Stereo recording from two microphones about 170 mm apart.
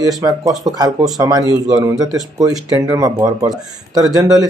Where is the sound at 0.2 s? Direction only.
20° right (ahead or behind).